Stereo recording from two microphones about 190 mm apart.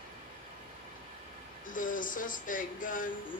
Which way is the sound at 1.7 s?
45° left (ahead or behind).